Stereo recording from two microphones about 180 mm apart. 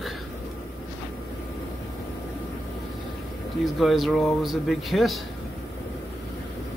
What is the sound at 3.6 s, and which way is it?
A man's voice, centre (ahead or behind).